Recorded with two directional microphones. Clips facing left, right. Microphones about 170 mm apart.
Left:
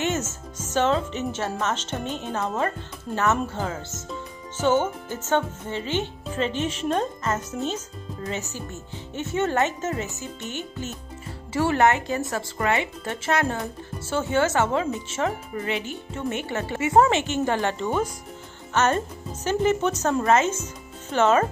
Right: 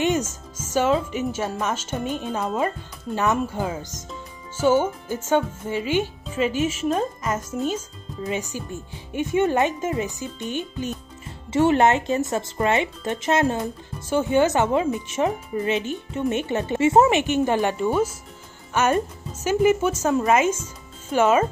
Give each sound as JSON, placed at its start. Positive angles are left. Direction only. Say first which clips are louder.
{"t": 0.0, "sound": "speech", "louder": "right 4 dB", "side_deg": -15}